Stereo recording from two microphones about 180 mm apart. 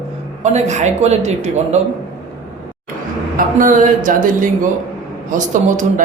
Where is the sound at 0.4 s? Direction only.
40° right (ahead or behind).